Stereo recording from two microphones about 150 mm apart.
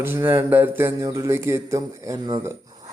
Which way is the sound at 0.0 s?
15° right (ahead or behind).